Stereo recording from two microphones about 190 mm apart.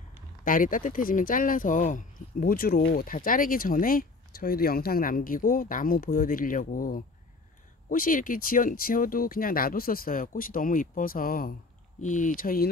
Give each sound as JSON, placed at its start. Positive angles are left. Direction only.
{"t": 0.5, "sound": "speech", "side_deg": 45}